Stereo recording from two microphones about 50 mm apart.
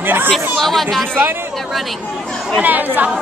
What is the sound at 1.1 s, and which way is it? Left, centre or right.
Speech, right.